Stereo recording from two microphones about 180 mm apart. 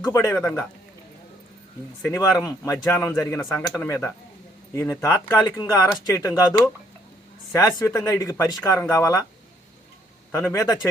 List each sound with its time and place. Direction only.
0.0 s speech: 15° left (ahead or behind)
2.0 s speech: 15° left (ahead or behind)
10.3 s speech: 15° left (ahead or behind)